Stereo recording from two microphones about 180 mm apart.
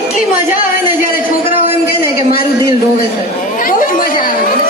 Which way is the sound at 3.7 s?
50° left (ahead or behind).